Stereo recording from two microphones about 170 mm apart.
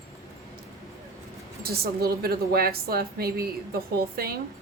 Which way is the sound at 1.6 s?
65° right (ahead or behind).